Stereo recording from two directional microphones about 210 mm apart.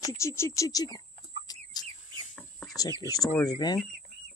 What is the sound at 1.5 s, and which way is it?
Bird, 20° left (ahead or behind).